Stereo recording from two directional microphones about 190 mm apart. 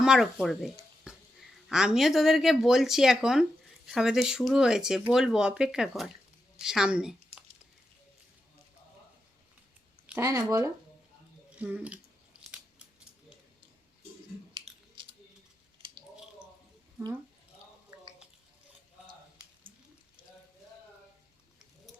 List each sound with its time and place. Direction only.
0.0 s speech: 5° right (ahead or behind)
10.2 s speech: 20° right (ahead or behind)
11.5 s speech: 5° right (ahead or behind)
14.5 s chewing: 25° right (ahead or behind)